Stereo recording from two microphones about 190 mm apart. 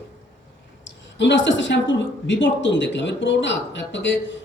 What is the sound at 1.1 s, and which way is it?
Speech, 70° left (ahead or behind).